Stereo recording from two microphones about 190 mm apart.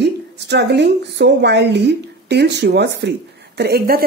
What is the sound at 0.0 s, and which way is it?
A woman's voice, 65° right (ahead or behind).